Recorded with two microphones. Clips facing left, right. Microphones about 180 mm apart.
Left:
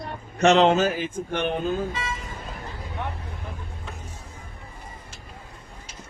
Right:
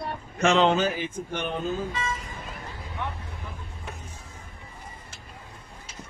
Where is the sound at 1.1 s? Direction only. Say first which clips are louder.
Left 4 dB; 60° left (ahead or behind).